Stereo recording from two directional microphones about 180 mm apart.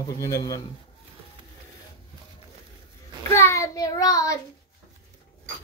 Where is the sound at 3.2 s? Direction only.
15° left (ahead or behind).